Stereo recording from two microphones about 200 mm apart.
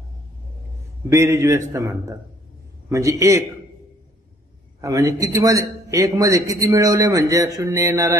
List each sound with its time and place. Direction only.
1.1 s a man's voice: 15° right (ahead or behind)
4.8 s a man's voice: 15° right (ahead or behind)